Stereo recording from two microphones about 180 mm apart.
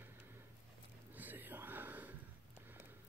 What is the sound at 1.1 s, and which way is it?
Whispering, 10° right (ahead or behind).